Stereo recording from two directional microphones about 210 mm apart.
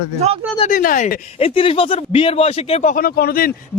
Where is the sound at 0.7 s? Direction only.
40° left (ahead or behind).